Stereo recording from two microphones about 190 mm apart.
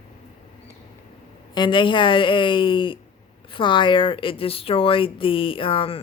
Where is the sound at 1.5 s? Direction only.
25° left (ahead or behind).